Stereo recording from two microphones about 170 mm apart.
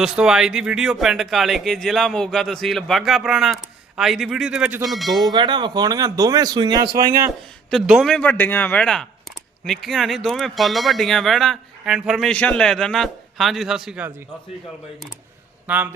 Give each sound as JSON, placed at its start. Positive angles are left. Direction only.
{"t": 0.0, "sound": "speech", "side_deg": -5}
{"t": 5.2, "sound": "speech", "side_deg": -25}
{"t": 7.7, "sound": "speech", "side_deg": 0}
{"t": 15.6, "sound": "speech", "side_deg": -10}